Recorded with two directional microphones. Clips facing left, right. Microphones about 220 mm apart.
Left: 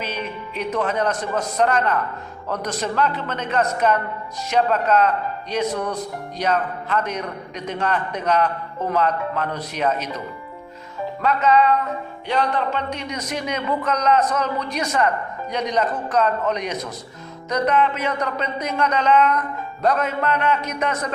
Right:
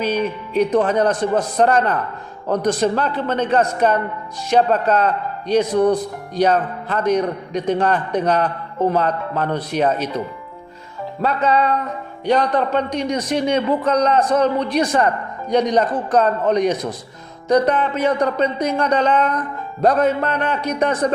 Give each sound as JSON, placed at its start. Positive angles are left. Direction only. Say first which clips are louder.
{"t": 0.0, "sound": "a man's voice", "louder": "right 8 dB", "side_deg": -35}
{"t": 11.2, "sound": "a man's voice", "louder": "even", "side_deg": -35}